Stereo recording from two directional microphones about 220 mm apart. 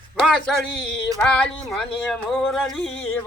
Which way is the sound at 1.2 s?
5° left (ahead or behind).